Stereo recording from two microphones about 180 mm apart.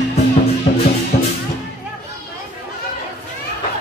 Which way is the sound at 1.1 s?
45° left (ahead or behind).